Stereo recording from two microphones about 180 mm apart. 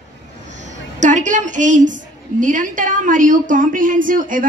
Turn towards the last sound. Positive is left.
turn(degrees=-50)  # may be behind; listen again after turning